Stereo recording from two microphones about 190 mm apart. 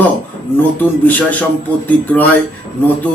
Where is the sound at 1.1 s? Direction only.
10° left (ahead or behind).